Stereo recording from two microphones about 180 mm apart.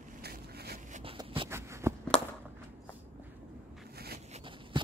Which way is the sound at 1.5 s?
15° right (ahead or behind).